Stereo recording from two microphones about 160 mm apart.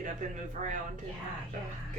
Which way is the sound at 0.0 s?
50° right (ahead or behind).